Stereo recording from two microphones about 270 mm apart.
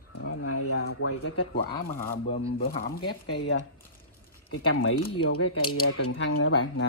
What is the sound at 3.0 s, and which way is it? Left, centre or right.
Speech, left.